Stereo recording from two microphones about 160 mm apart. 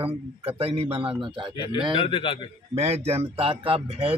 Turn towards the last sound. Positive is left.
turn(degrees=-35)  # may be behind; listen again after turning